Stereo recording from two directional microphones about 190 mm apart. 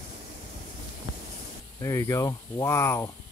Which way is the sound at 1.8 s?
15° left (ahead or behind).